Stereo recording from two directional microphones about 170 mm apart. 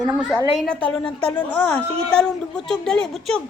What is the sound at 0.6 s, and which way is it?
A woman's voice, 5° left (ahead or behind).